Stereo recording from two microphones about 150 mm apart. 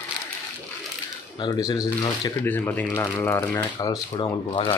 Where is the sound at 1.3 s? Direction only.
30° left (ahead or behind).